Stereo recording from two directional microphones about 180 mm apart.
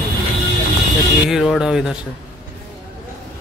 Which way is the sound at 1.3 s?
Centre (ahead or behind).